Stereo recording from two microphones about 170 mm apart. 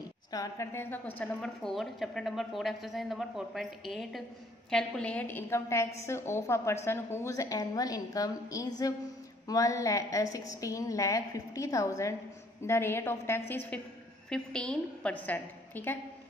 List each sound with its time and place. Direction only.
0.3 s a woman's voice: 20° left (ahead or behind)